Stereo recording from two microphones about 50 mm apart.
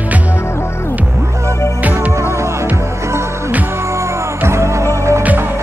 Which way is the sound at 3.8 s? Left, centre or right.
Right.